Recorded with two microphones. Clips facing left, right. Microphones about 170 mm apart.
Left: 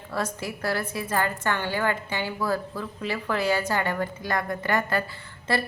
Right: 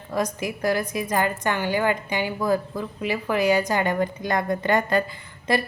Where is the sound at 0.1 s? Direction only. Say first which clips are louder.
Right 4 dB; 15° right (ahead or behind).